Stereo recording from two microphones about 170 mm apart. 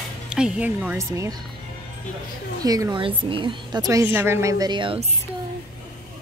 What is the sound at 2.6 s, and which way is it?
Speech, 20° right (ahead or behind).